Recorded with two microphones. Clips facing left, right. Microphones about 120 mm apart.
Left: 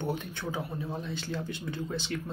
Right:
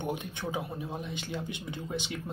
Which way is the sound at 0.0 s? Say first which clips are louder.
Left 1 dB; 15° right (ahead or behind).